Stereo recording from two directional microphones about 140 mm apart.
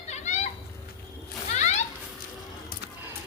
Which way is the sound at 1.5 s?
55° left (ahead or behind).